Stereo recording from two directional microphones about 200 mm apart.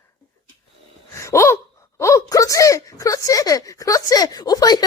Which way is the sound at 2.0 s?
15° left (ahead or behind).